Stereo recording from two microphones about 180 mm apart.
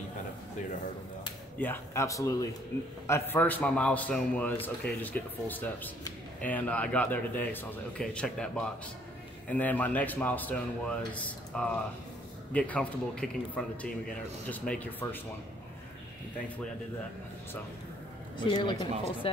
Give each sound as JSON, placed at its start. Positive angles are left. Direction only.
{"t": 1.6, "sound": "a man's voice", "side_deg": 15}
{"t": 18.4, "sound": "speech", "side_deg": 25}